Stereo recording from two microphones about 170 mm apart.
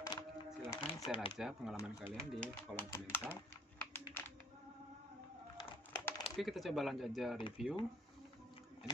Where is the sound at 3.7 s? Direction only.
15° left (ahead or behind).